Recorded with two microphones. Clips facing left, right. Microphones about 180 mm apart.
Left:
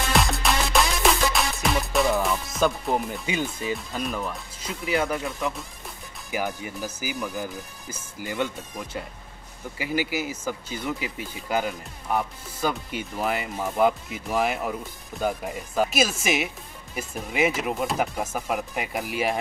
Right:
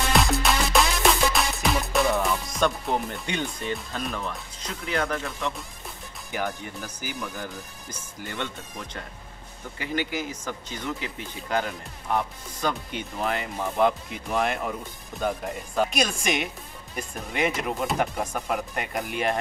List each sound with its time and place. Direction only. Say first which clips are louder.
0.1 s music: even; centre (ahead or behind)
6.3 s speech: left 2 dB; 10° left (ahead or behind)